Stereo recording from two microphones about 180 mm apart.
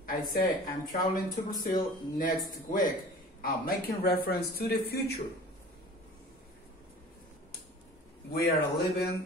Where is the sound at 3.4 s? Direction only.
55° left (ahead or behind).